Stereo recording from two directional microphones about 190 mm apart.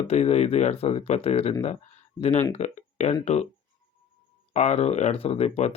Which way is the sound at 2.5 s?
35° left (ahead or behind).